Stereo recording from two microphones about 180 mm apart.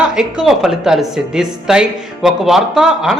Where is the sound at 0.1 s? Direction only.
5° right (ahead or behind).